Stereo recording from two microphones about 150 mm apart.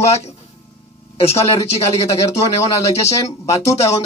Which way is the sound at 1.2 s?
40° left (ahead or behind).